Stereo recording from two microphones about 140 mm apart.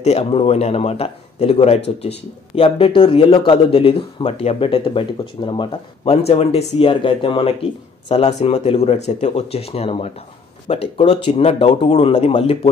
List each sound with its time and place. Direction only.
0.0 s speech: 50° left (ahead or behind)
6.0 s speech: 45° left (ahead or behind)
8.1 s speech: 50° left (ahead or behind)